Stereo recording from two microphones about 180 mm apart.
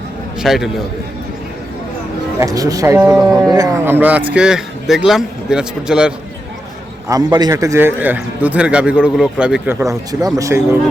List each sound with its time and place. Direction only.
0.3 s a man's voice: centre (ahead or behind)
2.4 s a man's voice: 20° right (ahead or behind)
7.1 s a man's voice: 20° right (ahead or behind)